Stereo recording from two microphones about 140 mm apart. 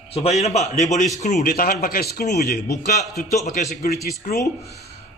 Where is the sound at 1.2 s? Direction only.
75° left (ahead or behind).